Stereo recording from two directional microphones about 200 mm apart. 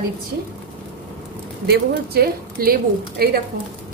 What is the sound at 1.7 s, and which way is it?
Speech, 50° right (ahead or behind).